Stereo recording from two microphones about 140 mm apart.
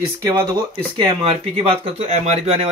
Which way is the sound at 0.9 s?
35° right (ahead or behind).